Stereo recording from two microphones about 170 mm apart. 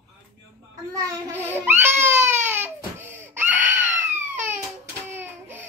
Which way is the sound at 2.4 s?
10° right (ahead or behind).